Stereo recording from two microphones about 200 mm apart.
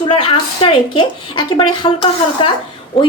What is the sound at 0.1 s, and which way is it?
A woman's voice, 25° left (ahead or behind).